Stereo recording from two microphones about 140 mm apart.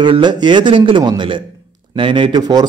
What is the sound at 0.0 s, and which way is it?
A man's voice, 35° right (ahead or behind).